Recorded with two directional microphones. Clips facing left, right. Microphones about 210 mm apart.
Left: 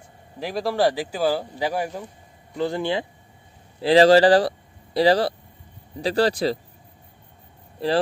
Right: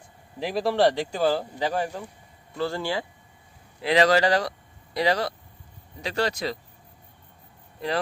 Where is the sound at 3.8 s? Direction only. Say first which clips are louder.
Left 6 dB; 30° left (ahead or behind).